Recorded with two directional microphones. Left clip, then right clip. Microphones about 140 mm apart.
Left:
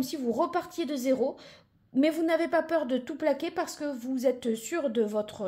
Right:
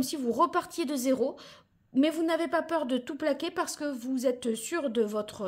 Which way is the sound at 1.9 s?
10° right (ahead or behind).